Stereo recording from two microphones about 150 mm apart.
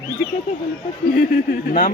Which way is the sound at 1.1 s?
90° left.